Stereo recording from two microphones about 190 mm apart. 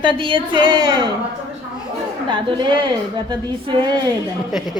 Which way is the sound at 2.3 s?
25° right (ahead or behind).